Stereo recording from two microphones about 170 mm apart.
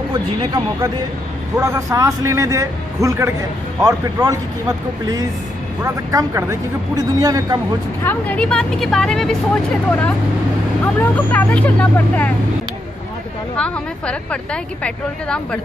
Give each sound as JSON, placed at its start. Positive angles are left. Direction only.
{"t": 0.1, "sound": "a man's voice", "side_deg": -25}
{"t": 1.6, "sound": "a man's voice", "side_deg": -20}
{"t": 8.0, "sound": "a woman's voice", "side_deg": 10}
{"t": 11.0, "sound": "speech", "side_deg": 10}
{"t": 13.6, "sound": "a woman's voice", "side_deg": 5}